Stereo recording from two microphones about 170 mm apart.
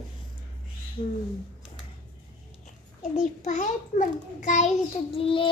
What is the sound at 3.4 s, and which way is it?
A child's voice, 45° left (ahead or behind).